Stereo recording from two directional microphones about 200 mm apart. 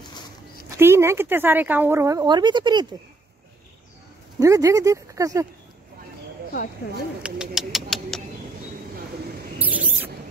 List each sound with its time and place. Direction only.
0.7 s speech: 10° right (ahead or behind)
4.4 s speech: 15° right (ahead or behind)
7.2 s speech: 5° right (ahead or behind)
9.7 s rodents: 45° right (ahead or behind)